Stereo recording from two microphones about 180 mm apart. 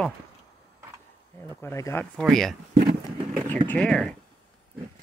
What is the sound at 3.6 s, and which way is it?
Speech, 5° left (ahead or behind).